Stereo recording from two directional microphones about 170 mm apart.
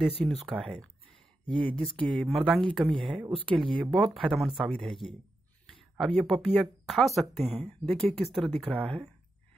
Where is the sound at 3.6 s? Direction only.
30° right (ahead or behind).